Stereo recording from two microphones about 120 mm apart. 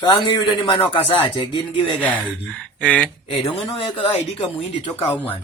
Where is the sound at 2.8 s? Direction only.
10° left (ahead or behind).